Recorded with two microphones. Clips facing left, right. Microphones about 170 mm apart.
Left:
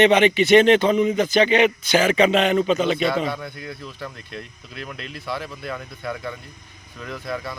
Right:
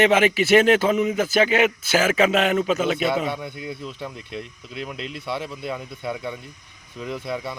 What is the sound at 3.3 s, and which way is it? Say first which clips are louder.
Speech: right 1 dB; 20° right (ahead or behind).